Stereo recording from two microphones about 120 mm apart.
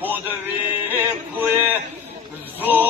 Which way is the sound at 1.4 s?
15° right (ahead or behind).